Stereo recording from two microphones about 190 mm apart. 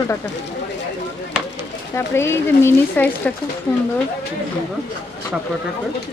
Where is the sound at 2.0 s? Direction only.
15° left (ahead or behind).